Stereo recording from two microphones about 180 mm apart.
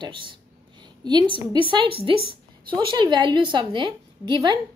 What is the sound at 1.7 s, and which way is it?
A woman's voice, 30° right (ahead or behind).